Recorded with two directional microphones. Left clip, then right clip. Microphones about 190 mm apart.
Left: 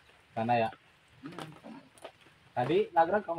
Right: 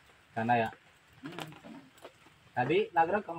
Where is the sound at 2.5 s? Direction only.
15° left (ahead or behind).